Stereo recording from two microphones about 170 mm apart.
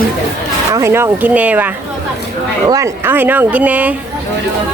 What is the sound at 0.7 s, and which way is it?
Speech, 15° right (ahead or behind).